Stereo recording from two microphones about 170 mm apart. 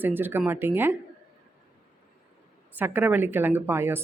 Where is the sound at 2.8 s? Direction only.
10° right (ahead or behind).